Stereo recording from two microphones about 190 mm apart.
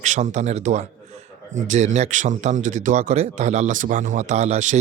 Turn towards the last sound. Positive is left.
turn(degrees=-40)  # may be behind; listen again after turning